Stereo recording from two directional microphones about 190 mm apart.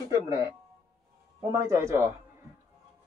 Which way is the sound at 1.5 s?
15° right (ahead or behind).